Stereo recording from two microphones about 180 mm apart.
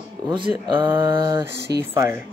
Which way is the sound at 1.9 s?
15° right (ahead or behind).